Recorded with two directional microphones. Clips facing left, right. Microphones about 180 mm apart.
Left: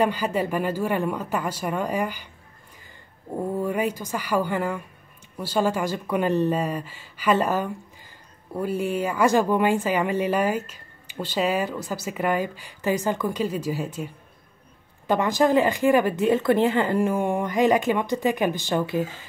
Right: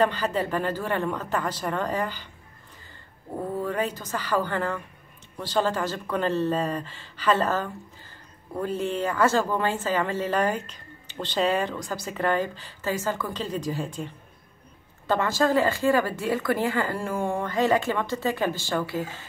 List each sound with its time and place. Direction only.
0.0 s speech: 10° left (ahead or behind)
3.3 s speech: 10° left (ahead or behind)